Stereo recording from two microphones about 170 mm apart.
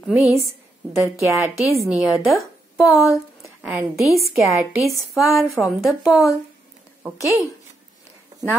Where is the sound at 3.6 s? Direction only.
5° right (ahead or behind).